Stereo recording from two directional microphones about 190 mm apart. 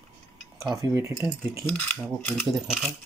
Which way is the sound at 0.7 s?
15° right (ahead or behind).